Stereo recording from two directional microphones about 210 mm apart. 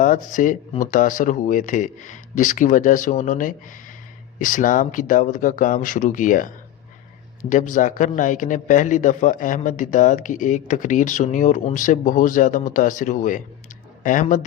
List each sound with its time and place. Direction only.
0.0 s a man's voice: 40° left (ahead or behind)
7.5 s a man's voice: 35° left (ahead or behind)